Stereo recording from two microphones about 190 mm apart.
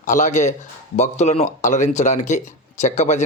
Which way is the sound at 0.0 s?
40° left (ahead or behind).